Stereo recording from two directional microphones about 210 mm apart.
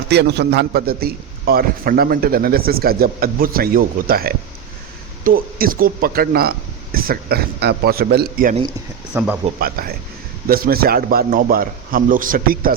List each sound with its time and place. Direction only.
0.1 s a man's voice: 55° right (ahead or behind)
9.1 s speech: 10° right (ahead or behind)
9.6 s a man's voice: 45° right (ahead or behind)